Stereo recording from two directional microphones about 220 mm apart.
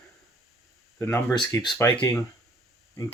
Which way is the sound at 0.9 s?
10° left (ahead or behind).